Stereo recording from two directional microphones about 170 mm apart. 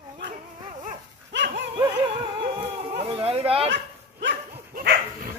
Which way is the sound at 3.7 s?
90° right.